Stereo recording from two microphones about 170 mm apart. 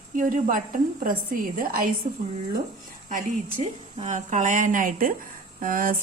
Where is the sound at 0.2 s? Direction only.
55° right (ahead or behind).